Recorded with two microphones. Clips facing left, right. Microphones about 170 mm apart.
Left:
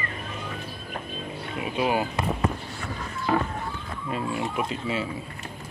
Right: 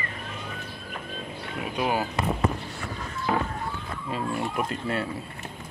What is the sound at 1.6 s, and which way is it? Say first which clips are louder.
Speech: left 2 dB; 5° left (ahead or behind).